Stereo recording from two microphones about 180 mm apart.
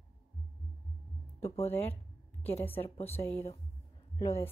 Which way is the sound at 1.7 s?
10° left (ahead or behind).